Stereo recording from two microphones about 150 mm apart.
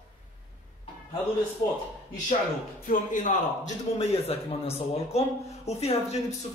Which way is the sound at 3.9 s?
45° left (ahead or behind).